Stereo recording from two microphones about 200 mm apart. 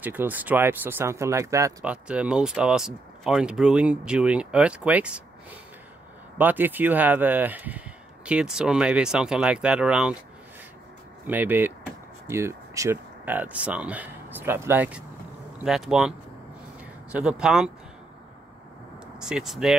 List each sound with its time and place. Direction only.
0.0 s speech: 10° right (ahead or behind)
6.3 s speech: 10° right (ahead or behind)
11.2 s speech: 10° right (ahead or behind)
19.1 s speech: 5° right (ahead or behind)